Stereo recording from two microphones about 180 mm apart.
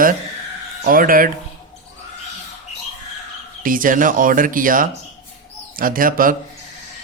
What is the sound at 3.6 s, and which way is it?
Speech, 50° right (ahead or behind).